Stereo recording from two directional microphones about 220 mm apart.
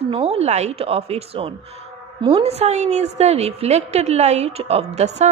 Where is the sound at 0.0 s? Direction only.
25° right (ahead or behind).